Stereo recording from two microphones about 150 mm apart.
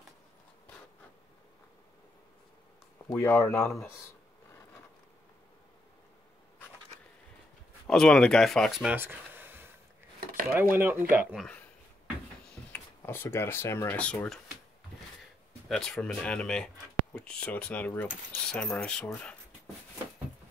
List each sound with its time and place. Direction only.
3.2 s speech: 15° left (ahead or behind)
7.8 s speech: 5° left (ahead or behind)
8.9 s a sound: 15° right (ahead or behind)
10.5 s speech: 10° right (ahead or behind)
12.7 s speech: 15° left (ahead or behind)
15.7 s speech: 5° left (ahead or behind)